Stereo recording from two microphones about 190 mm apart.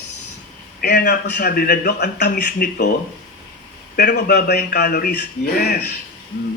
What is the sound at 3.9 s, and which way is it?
A man's voice, 60° left (ahead or behind).